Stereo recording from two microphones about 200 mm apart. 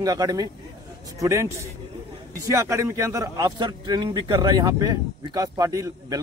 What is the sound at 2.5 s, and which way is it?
A man's voice, 15° right (ahead or behind).